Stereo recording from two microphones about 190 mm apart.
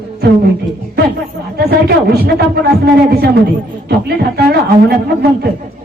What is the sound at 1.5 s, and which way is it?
A man's voice, 55° right (ahead or behind).